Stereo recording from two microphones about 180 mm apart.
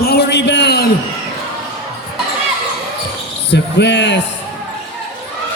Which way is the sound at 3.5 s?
75° left (ahead or behind).